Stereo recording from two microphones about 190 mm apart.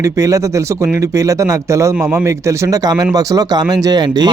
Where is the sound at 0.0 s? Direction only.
20° right (ahead or behind).